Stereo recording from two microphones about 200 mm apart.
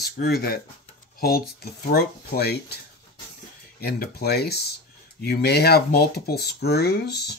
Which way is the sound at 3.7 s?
50° left (ahead or behind).